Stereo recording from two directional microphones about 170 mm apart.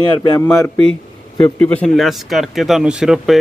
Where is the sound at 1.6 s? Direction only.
Centre (ahead or behind).